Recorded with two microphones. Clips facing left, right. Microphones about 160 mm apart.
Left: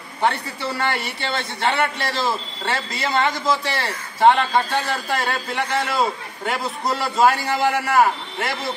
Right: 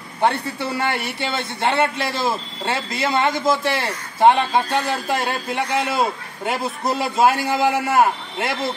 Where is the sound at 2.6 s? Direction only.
20° right (ahead or behind).